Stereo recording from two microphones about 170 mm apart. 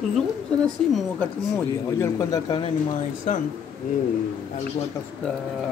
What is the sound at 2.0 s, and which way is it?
Speech, 20° left (ahead or behind).